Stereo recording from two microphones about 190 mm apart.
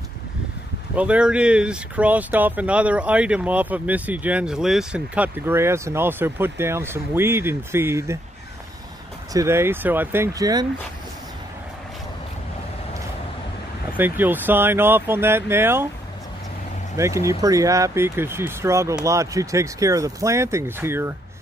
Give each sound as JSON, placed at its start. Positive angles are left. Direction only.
{"t": 0.9, "sound": "speech", "side_deg": -5}
{"t": 9.3, "sound": "speech", "side_deg": -15}
{"t": 13.9, "sound": "speech", "side_deg": -10}
{"t": 16.9, "sound": "speech", "side_deg": -15}